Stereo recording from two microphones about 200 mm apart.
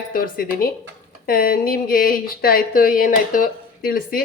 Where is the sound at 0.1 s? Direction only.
45° left (ahead or behind).